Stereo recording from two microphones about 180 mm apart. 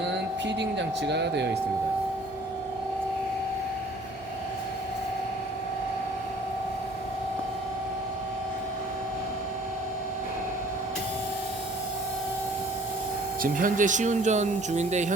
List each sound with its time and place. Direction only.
0.4 s speech: 75° right (ahead or behind)
13.4 s speech: 50° right (ahead or behind)